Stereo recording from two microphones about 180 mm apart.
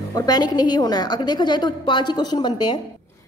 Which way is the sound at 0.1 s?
20° left (ahead or behind).